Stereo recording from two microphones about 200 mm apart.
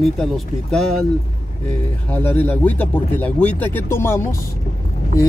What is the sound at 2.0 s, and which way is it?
Speech, 10° left (ahead or behind).